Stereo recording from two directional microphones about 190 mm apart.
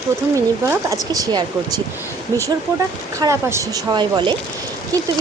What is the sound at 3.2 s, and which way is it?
Speech, 15° right (ahead or behind).